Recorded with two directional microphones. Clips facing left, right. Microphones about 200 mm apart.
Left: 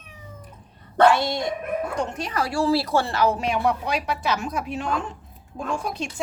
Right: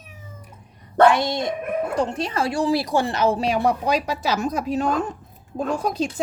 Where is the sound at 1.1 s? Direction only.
20° right (ahead or behind).